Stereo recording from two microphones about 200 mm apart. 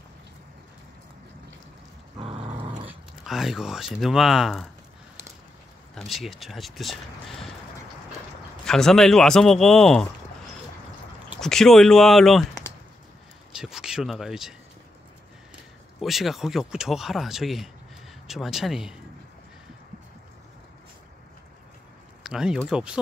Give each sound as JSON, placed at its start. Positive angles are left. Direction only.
{"t": 2.1, "sound": "a sound", "side_deg": -25}
{"t": 2.9, "sound": "speech", "side_deg": 0}
{"t": 5.9, "sound": "speech", "side_deg": 0}
{"t": 8.6, "sound": "speech", "side_deg": 5}
{"t": 11.4, "sound": "speech", "side_deg": 0}
{"t": 13.5, "sound": "a sound", "side_deg": -5}
{"t": 16.0, "sound": "speech", "side_deg": 0}
{"t": 22.2, "sound": "speech", "side_deg": -5}